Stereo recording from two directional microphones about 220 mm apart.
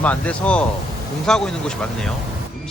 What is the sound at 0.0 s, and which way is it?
Speech, 5° left (ahead or behind).